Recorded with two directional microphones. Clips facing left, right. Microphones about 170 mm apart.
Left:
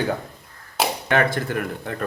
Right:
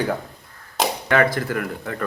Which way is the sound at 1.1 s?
25° left (ahead or behind).